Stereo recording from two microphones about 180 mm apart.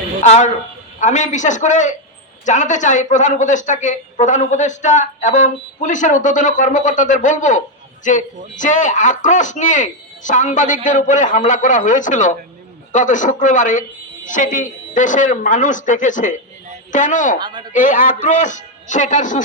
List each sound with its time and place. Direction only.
0.2 s speech: 40° left (ahead or behind)